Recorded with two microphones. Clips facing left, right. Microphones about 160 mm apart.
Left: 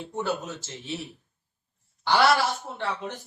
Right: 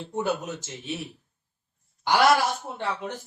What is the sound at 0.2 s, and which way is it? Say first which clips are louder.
Speech: right 2 dB; 15° right (ahead or behind).